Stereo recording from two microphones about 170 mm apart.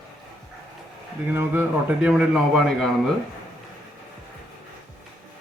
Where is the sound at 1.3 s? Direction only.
15° right (ahead or behind).